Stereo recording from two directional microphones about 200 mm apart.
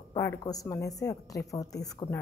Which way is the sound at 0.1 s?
20° left (ahead or behind).